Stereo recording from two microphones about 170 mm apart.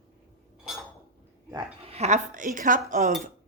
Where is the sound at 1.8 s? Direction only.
40° right (ahead or behind).